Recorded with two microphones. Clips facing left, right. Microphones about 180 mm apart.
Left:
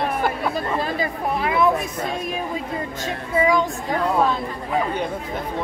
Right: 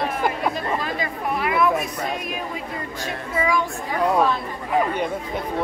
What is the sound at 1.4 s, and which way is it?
Speech, 25° left (ahead or behind).